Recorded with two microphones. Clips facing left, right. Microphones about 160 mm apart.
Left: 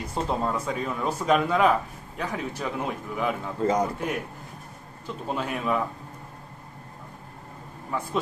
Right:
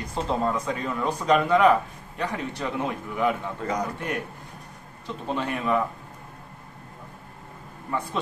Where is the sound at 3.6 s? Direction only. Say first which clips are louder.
Left 7 dB; 30° left (ahead or behind).